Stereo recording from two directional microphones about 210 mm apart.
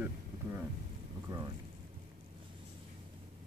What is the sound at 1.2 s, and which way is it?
Speech, 20° right (ahead or behind).